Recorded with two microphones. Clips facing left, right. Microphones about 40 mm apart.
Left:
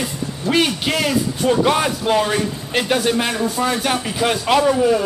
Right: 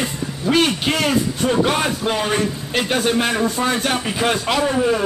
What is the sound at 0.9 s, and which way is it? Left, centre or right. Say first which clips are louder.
Speech: even; centre.